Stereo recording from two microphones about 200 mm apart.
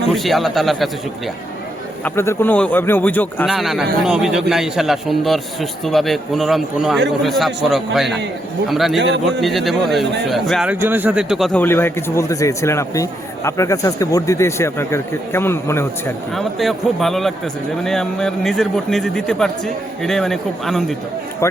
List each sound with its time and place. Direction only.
0.1 s a man's voice: centre (ahead or behind)
2.0 s a man's voice: 15° left (ahead or behind)
9.0 s a man's voice: 60° right (ahead or behind)
9.2 s a man's voice: centre (ahead or behind)
16.3 s a man's voice: centre (ahead or behind)